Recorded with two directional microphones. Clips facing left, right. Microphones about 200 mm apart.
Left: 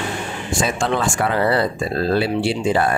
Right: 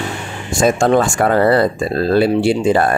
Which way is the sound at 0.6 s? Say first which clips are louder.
Right 8 dB; 45° right (ahead or behind).